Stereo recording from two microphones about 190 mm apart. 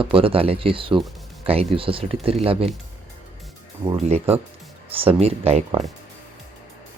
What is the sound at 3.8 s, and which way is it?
Speech, 25° right (ahead or behind).